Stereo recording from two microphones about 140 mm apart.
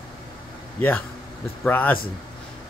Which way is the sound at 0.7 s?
15° left (ahead or behind).